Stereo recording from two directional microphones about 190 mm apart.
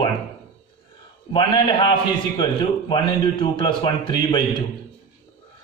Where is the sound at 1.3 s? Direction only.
25° left (ahead or behind).